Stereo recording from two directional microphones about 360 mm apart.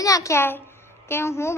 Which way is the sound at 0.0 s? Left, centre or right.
Centre.